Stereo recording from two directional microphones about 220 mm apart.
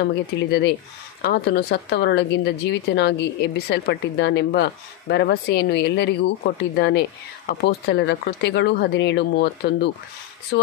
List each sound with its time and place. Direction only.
0.0 s speech: 50° left (ahead or behind)